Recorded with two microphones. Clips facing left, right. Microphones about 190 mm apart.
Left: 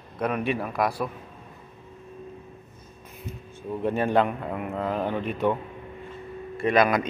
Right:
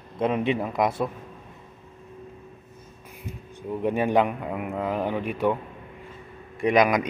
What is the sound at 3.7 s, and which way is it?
Speech, 15° right (ahead or behind).